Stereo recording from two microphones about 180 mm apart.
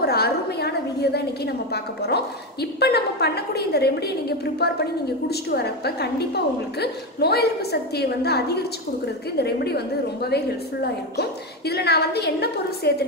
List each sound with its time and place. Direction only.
0.0 s a woman's voice: 60° left (ahead or behind)